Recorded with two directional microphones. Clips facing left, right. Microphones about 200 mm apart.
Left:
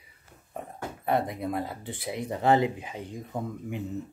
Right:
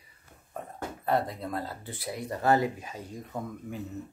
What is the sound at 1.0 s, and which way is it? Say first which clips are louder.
Speech: left 1 dB; 15° left (ahead or behind).